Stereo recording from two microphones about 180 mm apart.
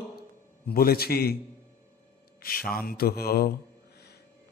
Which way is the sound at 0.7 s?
55° left (ahead or behind).